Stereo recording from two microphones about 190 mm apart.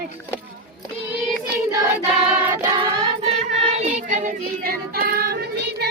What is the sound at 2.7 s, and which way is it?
Child singing, 30° right (ahead or behind).